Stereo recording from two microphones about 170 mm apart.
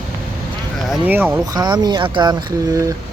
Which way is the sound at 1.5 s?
25° right (ahead or behind).